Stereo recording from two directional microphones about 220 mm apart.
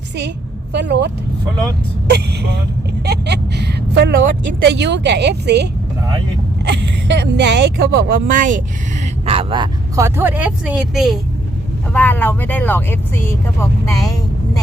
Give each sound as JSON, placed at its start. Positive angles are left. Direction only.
{"t": 0.7, "sound": "speech", "side_deg": -50}
{"t": 6.7, "sound": "speech", "side_deg": -50}
{"t": 9.2, "sound": "speech", "side_deg": -25}